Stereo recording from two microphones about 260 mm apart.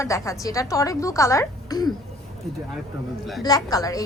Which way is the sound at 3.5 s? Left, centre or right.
Centre.